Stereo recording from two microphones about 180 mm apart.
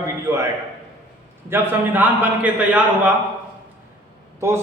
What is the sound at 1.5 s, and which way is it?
A man's voice, 10° right (ahead or behind).